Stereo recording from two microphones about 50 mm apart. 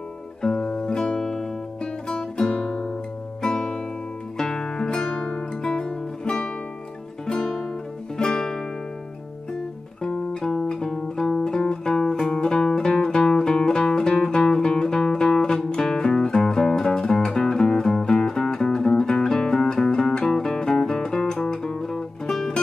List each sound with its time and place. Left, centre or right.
0.4 s music: centre
8.2 s music: centre
10.0 s music: centre